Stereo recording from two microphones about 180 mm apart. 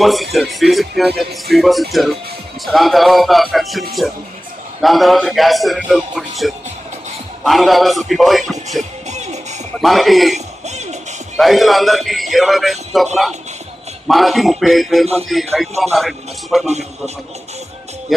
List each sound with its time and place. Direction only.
0.0 s speech: centre (ahead or behind)
8.8 s music: 40° right (ahead or behind)
9.8 s speech: centre (ahead or behind)
10.3 s speech: 40° right (ahead or behind)
11.3 s speech: centre (ahead or behind)